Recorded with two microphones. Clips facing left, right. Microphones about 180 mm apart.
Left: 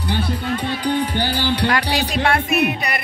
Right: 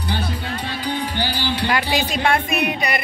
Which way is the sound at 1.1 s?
55° left (ahead or behind).